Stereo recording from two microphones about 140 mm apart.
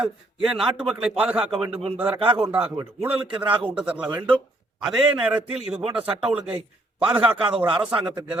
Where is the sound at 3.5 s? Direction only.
10° right (ahead or behind).